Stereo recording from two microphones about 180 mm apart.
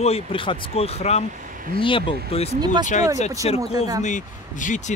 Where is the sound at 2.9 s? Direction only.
45° left (ahead or behind).